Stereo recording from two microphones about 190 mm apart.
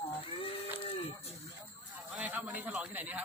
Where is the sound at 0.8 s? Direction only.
30° left (ahead or behind).